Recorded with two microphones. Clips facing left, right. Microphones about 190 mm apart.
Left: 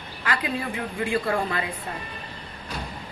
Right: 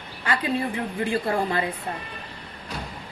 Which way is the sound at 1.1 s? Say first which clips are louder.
Right 1 dB; 30° right (ahead or behind).